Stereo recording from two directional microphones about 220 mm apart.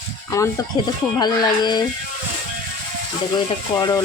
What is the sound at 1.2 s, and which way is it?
Speech, 20° left (ahead or behind).